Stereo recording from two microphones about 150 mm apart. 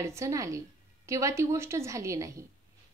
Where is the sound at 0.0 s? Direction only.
20° right (ahead or behind).